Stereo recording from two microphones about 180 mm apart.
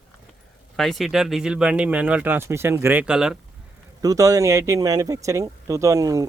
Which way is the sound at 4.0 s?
20° right (ahead or behind).